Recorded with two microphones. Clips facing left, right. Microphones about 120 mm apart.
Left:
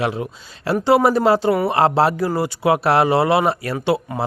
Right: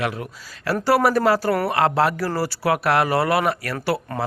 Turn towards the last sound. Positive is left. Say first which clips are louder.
# left 4 dB
turn(degrees=25)  # may be behind; listen again after turning